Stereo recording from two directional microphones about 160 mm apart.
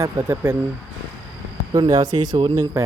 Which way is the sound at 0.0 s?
20° right (ahead or behind).